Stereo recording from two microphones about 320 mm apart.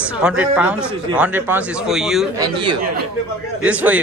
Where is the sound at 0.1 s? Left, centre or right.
Centre.